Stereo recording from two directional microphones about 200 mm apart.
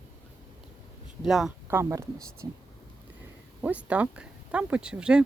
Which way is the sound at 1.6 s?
15° right (ahead or behind).